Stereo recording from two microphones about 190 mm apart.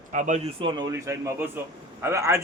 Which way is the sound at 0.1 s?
40° right (ahead or behind).